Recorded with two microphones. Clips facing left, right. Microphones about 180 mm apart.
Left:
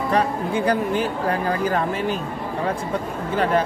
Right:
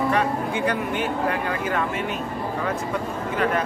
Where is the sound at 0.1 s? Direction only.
35° left (ahead or behind).